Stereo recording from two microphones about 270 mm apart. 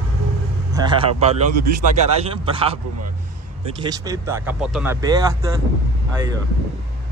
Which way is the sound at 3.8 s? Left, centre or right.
Centre.